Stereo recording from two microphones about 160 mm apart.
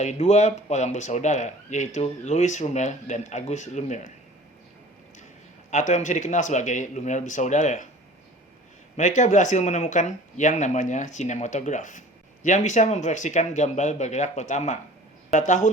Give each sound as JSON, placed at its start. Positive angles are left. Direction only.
{"t": 0.0, "sound": "speech", "side_deg": 45}
{"t": 5.7, "sound": "speech", "side_deg": 50}
{"t": 9.0, "sound": "speech", "side_deg": 50}